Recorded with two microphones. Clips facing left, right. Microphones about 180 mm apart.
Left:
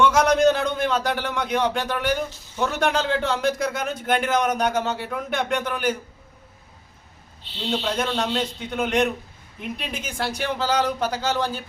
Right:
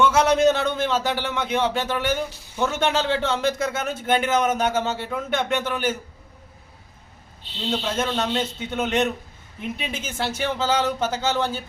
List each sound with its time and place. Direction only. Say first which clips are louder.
0.0 s speech: even; 5° right (ahead or behind)
7.7 s speech: even; centre (ahead or behind)